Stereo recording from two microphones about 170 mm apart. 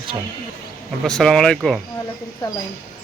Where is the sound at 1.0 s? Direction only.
5° left (ahead or behind).